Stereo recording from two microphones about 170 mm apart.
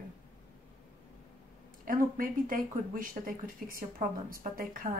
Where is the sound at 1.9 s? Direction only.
55° right (ahead or behind).